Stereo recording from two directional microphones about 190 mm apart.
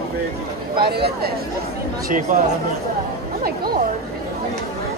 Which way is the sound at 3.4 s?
50° right (ahead or behind).